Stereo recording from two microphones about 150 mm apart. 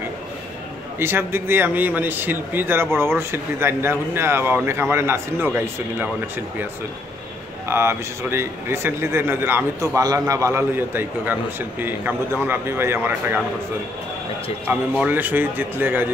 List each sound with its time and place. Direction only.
0.9 s speech: 15° right (ahead or behind)
7.6 s speech: 15° right (ahead or behind)
14.7 s speech: 10° right (ahead or behind)